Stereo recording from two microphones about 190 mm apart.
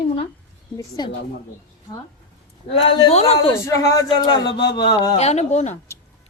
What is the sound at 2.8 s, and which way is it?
Speech, 30° left (ahead or behind).